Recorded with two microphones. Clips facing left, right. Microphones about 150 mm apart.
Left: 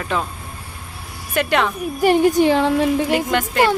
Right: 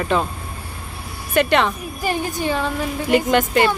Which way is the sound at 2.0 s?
75° left (ahead or behind).